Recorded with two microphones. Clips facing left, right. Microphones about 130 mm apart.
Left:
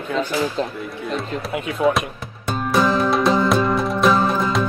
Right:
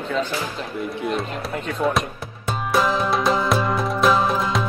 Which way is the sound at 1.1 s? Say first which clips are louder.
Left 1 dB; 5° left (ahead or behind).